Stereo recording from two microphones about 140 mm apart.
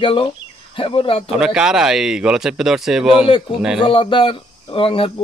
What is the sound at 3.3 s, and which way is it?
Speech, 35° left (ahead or behind).